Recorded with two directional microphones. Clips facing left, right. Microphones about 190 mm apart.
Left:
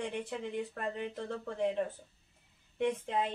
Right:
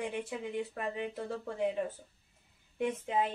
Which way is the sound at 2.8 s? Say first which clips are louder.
Even; 5° right (ahead or behind).